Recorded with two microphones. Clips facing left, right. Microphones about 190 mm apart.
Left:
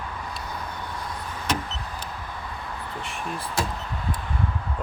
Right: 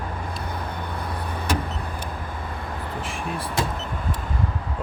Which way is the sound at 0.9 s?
60° right (ahead or behind).